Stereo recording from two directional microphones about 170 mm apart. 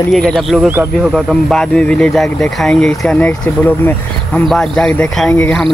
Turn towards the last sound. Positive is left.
turn(degrees=5)  # may be behind; listen again after turning